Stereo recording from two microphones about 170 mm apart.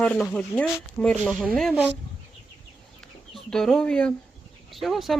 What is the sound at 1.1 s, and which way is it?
Speech, 5° right (ahead or behind).